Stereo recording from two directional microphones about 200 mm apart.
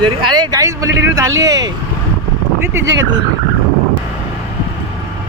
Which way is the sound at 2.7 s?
15° right (ahead or behind).